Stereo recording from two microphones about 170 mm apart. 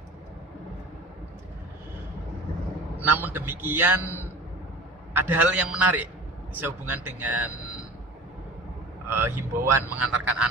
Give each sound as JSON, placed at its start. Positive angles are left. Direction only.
{"t": 3.0, "sound": "a man's voice", "side_deg": -10}
{"t": 9.1, "sound": "a man's voice", "side_deg": -15}